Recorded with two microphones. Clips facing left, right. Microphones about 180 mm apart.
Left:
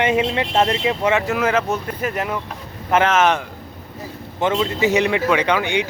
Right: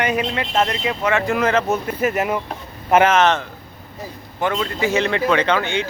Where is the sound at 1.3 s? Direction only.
5° left (ahead or behind).